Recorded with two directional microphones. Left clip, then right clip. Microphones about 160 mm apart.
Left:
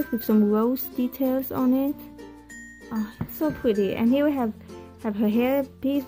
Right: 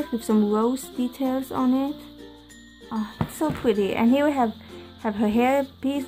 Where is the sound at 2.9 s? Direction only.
25° left (ahead or behind).